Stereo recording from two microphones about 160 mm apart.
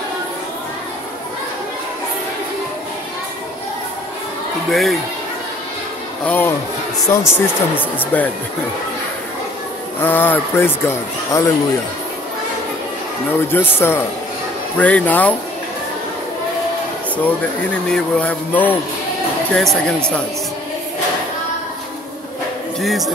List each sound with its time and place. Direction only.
4.6 s speech: centre (ahead or behind)
6.2 s speech: 15° left (ahead or behind)
9.9 s speech: 10° left (ahead or behind)
13.5 s speech: 15° left (ahead or behind)
17.8 s speech: 5° left (ahead or behind)
22.8 s speech: centre (ahead or behind)